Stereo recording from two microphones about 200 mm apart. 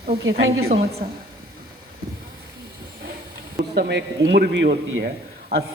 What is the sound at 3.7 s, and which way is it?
A man's voice, 60° right (ahead or behind).